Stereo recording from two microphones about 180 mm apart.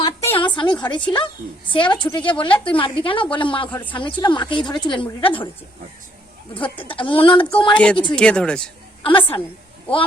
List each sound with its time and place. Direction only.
0.0 s a sound: 15° left (ahead or behind)
0.3 s a woman's voice: 25° left (ahead or behind)
6.5 s a woman's voice: 30° left (ahead or behind)
8.1 s speech: 5° left (ahead or behind)
9.0 s a woman's voice: 30° left (ahead or behind)